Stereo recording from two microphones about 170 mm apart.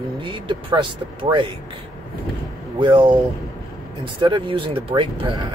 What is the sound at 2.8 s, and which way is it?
Speech, 25° right (ahead or behind).